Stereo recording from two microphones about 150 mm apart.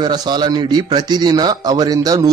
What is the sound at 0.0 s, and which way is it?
Speech, 30° right (ahead or behind).